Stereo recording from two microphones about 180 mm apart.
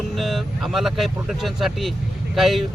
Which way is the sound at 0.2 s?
Centre (ahead or behind).